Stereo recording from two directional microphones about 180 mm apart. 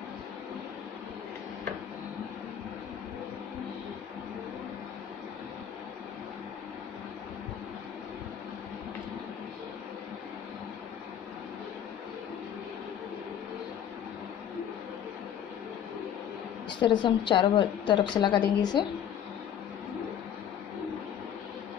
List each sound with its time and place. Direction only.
16.8 s a woman's voice: 25° left (ahead or behind)